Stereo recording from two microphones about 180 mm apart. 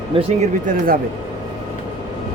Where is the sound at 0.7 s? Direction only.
50° right (ahead or behind).